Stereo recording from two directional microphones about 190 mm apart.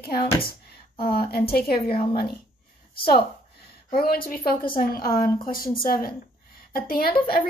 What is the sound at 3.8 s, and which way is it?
Speech, 50° left (ahead or behind).